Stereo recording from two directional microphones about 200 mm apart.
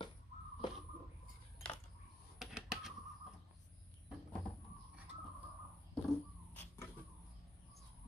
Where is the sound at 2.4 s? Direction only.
Centre (ahead or behind).